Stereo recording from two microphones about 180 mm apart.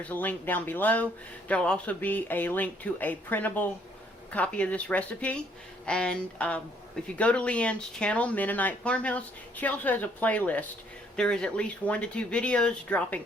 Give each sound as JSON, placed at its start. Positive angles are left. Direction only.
{"t": 0.0, "sound": "speech", "side_deg": 10}